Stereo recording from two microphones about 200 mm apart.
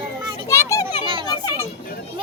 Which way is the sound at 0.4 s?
15° left (ahead or behind).